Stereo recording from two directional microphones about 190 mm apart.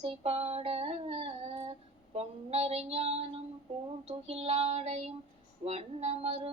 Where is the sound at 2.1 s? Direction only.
35° right (ahead or behind).